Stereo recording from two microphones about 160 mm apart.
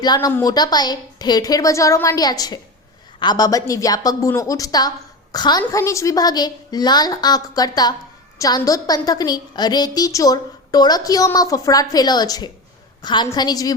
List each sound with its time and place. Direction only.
0.0 s a woman's voice: 25° left (ahead or behind)